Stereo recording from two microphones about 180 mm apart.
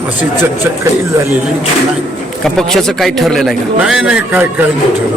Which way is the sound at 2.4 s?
Centre (ahead or behind).